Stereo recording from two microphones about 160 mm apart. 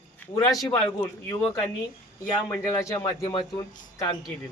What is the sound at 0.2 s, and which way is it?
Speech, 15° left (ahead or behind).